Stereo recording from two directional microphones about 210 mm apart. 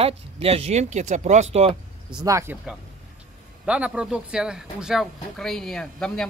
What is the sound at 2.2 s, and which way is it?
Speech, 15° right (ahead or behind).